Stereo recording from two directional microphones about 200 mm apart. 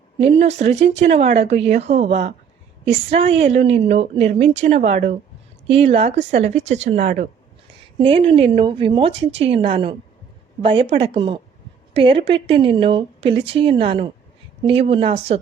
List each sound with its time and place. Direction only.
0.2 s a woman's voice: 30° right (ahead or behind)
7.9 s a woman's voice: 25° right (ahead or behind)